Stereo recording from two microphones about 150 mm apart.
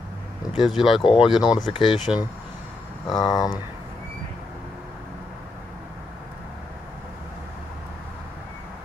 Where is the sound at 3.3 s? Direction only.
25° left (ahead or behind).